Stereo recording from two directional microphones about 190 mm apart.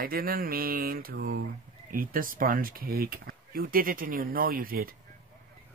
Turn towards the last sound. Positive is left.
turn(degrees=-50)  # may be behind; listen again after turning